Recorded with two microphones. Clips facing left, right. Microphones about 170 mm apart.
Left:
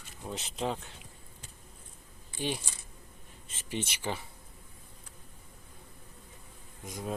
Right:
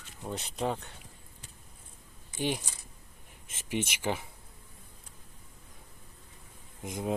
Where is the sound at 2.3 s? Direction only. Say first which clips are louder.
Right 3 dB; 15° right (ahead or behind).